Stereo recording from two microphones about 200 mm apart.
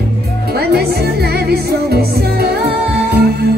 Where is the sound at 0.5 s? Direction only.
50° right (ahead or behind).